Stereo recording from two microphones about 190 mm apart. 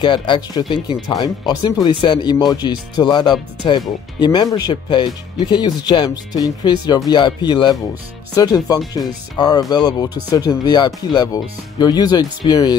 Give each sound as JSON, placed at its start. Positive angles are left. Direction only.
{"t": 0.0, "sound": "speech", "side_deg": 25}